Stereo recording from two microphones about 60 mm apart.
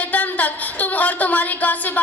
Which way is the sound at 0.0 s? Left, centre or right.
Left.